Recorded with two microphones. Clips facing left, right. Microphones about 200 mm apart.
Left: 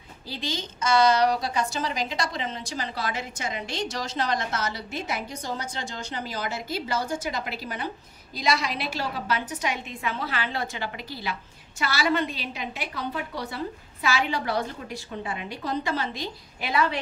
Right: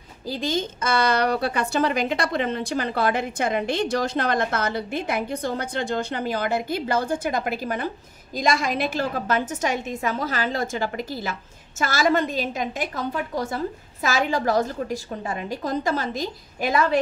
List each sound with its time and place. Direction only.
0.3 s a woman's voice: 50° right (ahead or behind)